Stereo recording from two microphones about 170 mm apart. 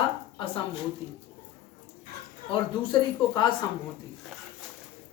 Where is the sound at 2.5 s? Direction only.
30° left (ahead or behind).